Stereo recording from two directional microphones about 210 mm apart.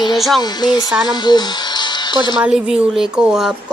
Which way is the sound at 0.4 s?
20° left (ahead or behind).